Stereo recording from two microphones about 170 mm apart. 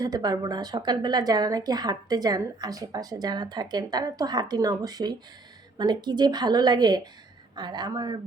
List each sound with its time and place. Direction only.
0.0 s speech: 20° right (ahead or behind)